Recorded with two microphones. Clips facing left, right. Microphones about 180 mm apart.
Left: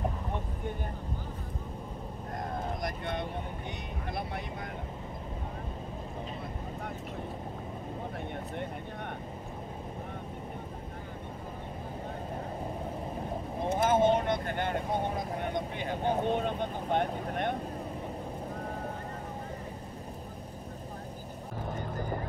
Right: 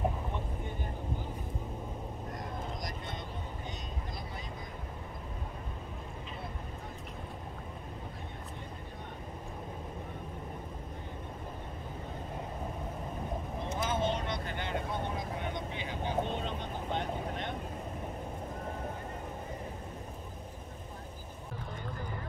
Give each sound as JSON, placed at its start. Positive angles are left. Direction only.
{"t": 2.8, "sound": "vehicle", "side_deg": 60}
{"t": 13.7, "sound": "vehicle", "side_deg": 55}